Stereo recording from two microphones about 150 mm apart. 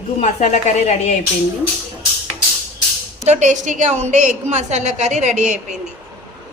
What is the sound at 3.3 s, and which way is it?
A woman's voice, 55° right (ahead or behind).